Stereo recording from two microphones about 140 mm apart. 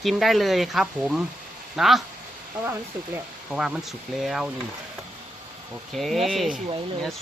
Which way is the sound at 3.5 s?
5° right (ahead or behind).